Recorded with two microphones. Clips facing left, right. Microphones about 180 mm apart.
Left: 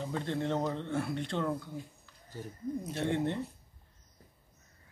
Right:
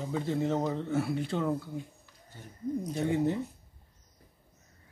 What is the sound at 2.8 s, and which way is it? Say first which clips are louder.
Speech: right 3 dB; centre (ahead or behind).